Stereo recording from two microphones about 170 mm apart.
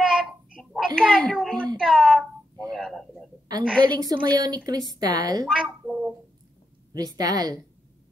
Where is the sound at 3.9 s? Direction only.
25° right (ahead or behind).